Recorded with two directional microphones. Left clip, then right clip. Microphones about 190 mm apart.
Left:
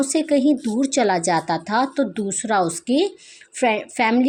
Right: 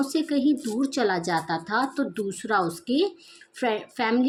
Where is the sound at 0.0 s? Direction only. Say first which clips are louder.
Left 6 dB; 35° left (ahead or behind).